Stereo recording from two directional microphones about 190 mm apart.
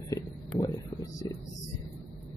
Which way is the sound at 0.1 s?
15° left (ahead or behind).